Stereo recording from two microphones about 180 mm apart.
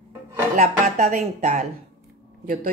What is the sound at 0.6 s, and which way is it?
Speech, 40° right (ahead or behind).